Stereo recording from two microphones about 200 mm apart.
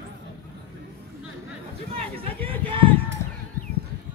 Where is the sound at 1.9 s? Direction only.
30° right (ahead or behind).